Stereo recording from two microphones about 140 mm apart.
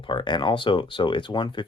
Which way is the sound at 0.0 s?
35° left (ahead or behind).